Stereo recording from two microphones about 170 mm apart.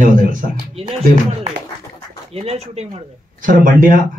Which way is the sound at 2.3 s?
40° right (ahead or behind).